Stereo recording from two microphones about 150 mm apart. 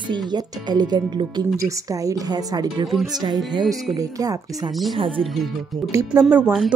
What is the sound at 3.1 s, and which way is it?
Speech, 30° right (ahead or behind).